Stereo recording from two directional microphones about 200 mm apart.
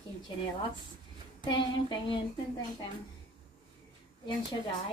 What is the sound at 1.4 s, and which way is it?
Speech, 25° left (ahead or behind).